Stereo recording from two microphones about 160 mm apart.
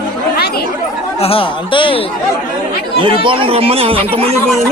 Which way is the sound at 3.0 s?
30° right (ahead or behind).